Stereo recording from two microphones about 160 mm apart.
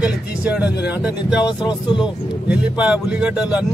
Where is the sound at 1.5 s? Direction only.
25° left (ahead or behind).